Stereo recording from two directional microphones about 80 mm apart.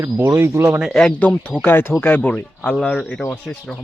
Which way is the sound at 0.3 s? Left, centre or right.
Right.